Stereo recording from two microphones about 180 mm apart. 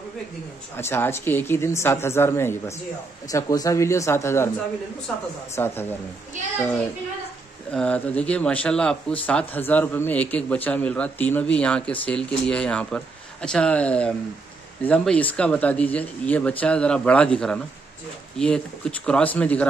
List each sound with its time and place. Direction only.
0.7 s a man's voice: 15° left (ahead or behind)
5.6 s a man's voice: 10° left (ahead or behind)
7.7 s a man's voice: 5° left (ahead or behind)